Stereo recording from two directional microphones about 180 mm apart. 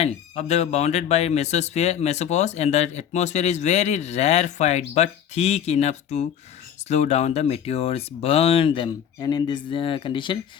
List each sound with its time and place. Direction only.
0.0 s speech: 35° left (ahead or behind)